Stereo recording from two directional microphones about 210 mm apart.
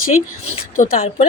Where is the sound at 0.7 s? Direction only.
40° left (ahead or behind).